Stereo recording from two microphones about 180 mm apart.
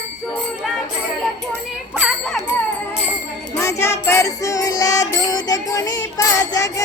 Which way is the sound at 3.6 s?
15° left (ahead or behind).